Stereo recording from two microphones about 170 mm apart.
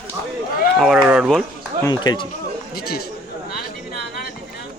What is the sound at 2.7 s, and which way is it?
Speech, 65° left (ahead or behind).